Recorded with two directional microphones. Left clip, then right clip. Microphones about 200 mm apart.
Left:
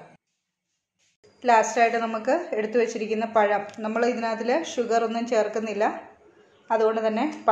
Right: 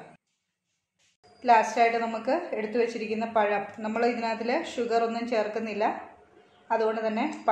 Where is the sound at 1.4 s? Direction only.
35° left (ahead or behind).